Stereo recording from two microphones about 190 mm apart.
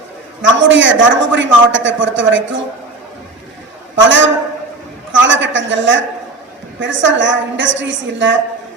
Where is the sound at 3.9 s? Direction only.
80° right.